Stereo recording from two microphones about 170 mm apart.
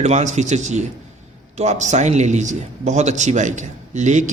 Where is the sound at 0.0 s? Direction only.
40° right (ahead or behind).